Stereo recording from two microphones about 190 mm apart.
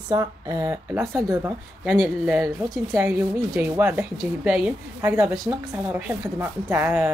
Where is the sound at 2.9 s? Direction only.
10° right (ahead or behind).